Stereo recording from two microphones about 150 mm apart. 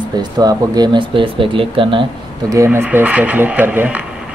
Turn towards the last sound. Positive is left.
turn(degrees=-10)  # may be behind; listen again after turning